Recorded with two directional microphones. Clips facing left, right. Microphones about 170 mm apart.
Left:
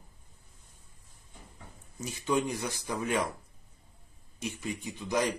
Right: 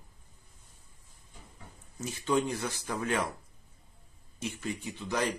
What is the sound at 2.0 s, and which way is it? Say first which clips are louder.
Speech: right 1 dB; 15° left (ahead or behind).